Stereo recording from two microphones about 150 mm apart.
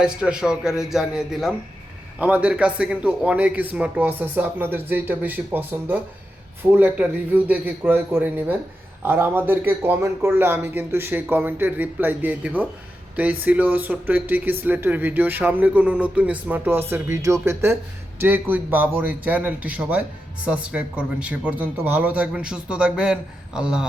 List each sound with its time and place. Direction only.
0.0 s a man's voice: 5° right (ahead or behind)